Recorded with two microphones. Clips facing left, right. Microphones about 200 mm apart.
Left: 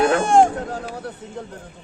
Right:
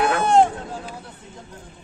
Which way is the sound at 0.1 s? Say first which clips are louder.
Left 2 dB; 50° left (ahead or behind).